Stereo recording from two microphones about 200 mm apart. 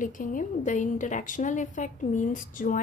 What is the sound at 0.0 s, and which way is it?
A woman's voice, 40° left (ahead or behind).